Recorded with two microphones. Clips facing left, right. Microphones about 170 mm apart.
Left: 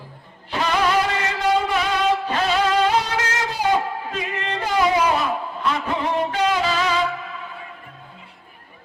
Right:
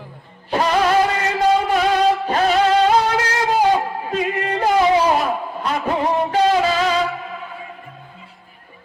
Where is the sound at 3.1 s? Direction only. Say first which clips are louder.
Right 6 dB; 35° right (ahead or behind).